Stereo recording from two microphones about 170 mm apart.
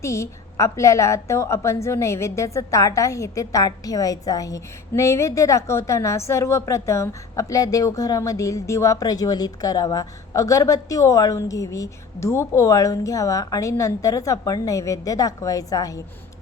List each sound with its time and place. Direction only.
0.0 s a woman's voice: 15° left (ahead or behind)